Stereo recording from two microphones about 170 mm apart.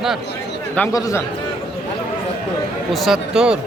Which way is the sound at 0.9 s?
20° left (ahead or behind).